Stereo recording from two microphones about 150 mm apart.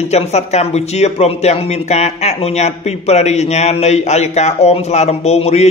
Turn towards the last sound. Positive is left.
turn(degrees=45)  # may be behind; listen again after turning